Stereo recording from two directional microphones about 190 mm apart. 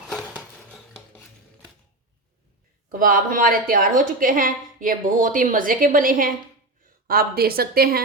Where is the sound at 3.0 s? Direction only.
45° right (ahead or behind).